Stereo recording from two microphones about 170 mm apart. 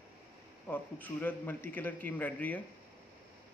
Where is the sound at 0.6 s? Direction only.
10° left (ahead or behind).